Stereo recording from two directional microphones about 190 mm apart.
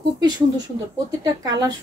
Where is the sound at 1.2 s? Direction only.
20° right (ahead or behind).